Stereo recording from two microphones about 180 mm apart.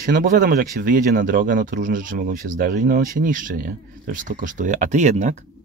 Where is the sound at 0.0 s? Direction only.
50° right (ahead or behind).